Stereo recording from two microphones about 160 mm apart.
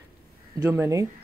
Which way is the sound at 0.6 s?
15° right (ahead or behind).